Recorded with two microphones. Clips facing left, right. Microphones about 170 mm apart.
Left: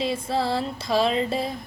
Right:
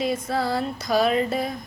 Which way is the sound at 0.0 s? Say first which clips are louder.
Even; 30° left (ahead or behind).